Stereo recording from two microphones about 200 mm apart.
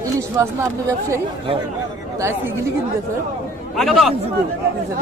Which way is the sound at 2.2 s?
15° right (ahead or behind).